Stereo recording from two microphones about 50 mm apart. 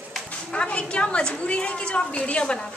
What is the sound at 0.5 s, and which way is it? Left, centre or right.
A woman's voice, left.